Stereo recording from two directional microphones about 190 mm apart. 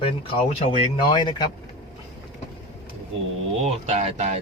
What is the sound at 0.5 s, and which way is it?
Speech, 30° left (ahead or behind).